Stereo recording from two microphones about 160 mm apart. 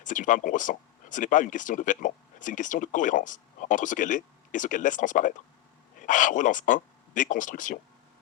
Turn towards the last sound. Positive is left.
turn(degrees=55)  # may be behind; listen again after turning